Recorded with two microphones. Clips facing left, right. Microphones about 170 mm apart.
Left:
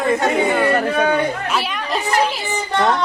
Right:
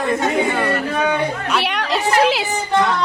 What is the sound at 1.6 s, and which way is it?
Speech, 85° right.